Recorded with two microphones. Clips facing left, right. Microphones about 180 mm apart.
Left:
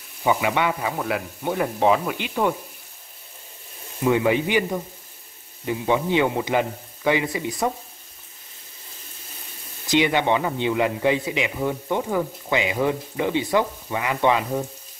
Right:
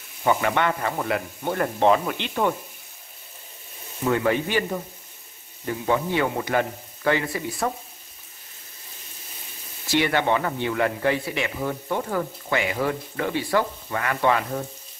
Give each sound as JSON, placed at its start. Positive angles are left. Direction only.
{"t": 0.2, "sound": "speech", "side_deg": 10}
{"t": 4.0, "sound": "speech", "side_deg": 10}
{"t": 5.7, "sound": "speech", "side_deg": 15}
{"t": 9.8, "sound": "speech", "side_deg": 15}